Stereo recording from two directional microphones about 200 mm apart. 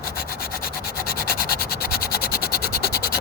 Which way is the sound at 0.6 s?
50° left (ahead or behind).